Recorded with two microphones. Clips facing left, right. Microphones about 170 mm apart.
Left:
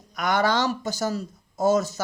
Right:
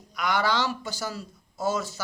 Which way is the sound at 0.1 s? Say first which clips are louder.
Left 3 dB; 45° left (ahead or behind).